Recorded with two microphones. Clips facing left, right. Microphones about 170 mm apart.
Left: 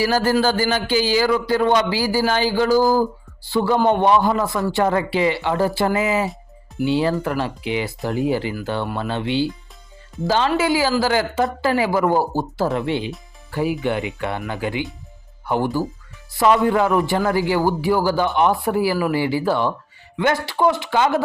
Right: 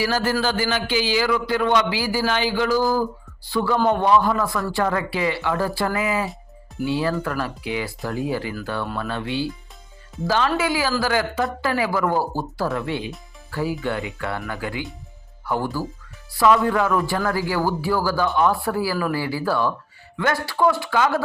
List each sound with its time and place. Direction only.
0.0 s a man's voice: 35° left (ahead or behind)